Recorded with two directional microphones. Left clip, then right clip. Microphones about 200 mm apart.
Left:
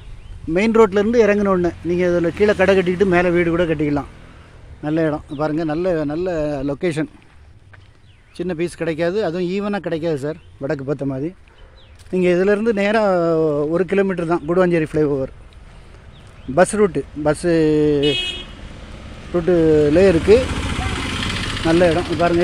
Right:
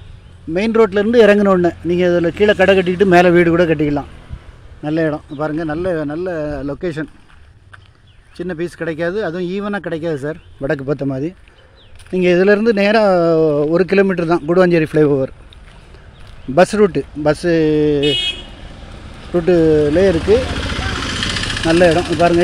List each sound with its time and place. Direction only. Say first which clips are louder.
0.5 s speech: even; centre (ahead or behind)
1.1 s speech: right 5 dB; 20° right (ahead or behind)
3.1 s speech: right 6 dB; 25° right (ahead or behind)
4.8 s speech: right 2 dB; 5° right (ahead or behind)
5.4 s speech: even; 5° left (ahead or behind)
8.4 s speech: even; 10° left (ahead or behind); by 15.3 s 15° right (ahead or behind)
16.5 s speech: right 3 dB; 10° right (ahead or behind)
19.3 s speech: right 2 dB; 10° right (ahead or behind); by 21.0 s 15° left (ahead or behind)
21.5 s speech: right 3 dB; 15° right (ahead or behind)